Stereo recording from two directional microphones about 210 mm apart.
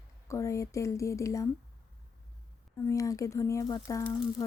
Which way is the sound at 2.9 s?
15° left (ahead or behind).